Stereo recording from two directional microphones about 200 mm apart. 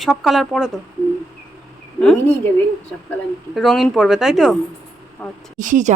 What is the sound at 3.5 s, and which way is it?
Speech, centre (ahead or behind).